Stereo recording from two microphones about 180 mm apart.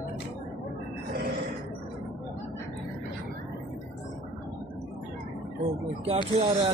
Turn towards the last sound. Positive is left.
turn(degrees=-35)  # may be behind; listen again after turning